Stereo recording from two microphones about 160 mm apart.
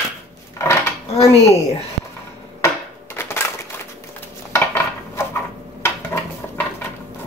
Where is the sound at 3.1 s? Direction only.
15° left (ahead or behind).